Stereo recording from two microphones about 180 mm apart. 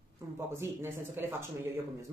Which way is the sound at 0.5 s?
15° right (ahead or behind).